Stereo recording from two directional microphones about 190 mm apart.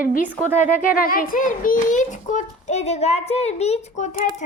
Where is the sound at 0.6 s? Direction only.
50° left (ahead or behind).